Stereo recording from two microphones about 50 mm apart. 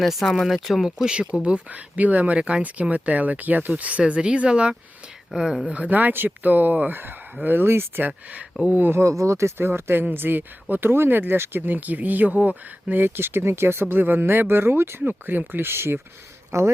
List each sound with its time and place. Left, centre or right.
0.0 s speech: centre
1.3 s speech: right
2.4 s speech: right
5.6 s speech: right
8.0 s speech: right
8.9 s speech: right
9.6 s speech: right
13.0 s speech: right
16.5 s speech: right